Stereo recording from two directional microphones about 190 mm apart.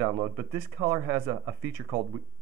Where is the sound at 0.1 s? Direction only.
20° right (ahead or behind).